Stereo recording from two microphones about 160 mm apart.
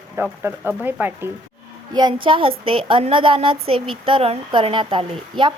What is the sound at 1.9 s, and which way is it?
A woman's voice, 30° right (ahead or behind).